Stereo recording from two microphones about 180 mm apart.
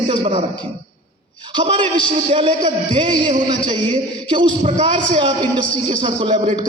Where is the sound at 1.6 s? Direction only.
30° right (ahead or behind).